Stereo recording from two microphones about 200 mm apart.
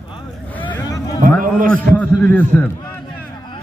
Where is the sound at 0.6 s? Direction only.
10° left (ahead or behind).